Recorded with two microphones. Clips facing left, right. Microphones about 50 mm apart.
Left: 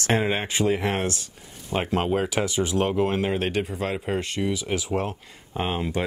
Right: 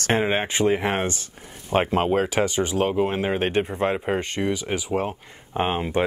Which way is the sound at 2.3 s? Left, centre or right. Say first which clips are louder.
Right 2 dB; right.